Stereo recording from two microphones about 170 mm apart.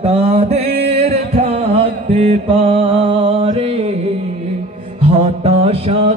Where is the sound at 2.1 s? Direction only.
35° right (ahead or behind).